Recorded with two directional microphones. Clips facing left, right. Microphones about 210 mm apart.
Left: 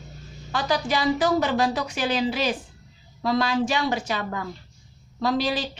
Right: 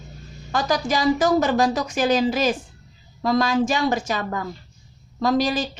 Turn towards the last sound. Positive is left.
turn(degrees=-45)  # may be behind; listen again after turning